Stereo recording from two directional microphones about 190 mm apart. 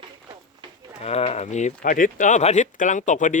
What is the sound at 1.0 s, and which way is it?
Speech, 35° left (ahead or behind).